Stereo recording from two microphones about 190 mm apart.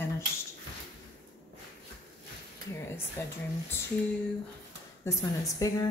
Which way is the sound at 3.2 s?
10° left (ahead or behind).